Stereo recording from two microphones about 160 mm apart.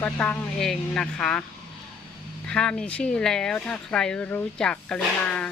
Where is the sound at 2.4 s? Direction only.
5° left (ahead or behind).